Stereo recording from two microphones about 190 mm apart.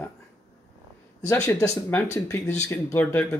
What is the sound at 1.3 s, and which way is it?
Speech, 15° left (ahead or behind).